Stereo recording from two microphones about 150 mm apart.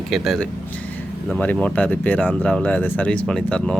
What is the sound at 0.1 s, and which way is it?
Speech, centre (ahead or behind).